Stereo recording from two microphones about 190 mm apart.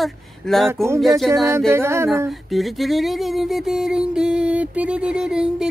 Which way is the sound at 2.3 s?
Centre (ahead or behind).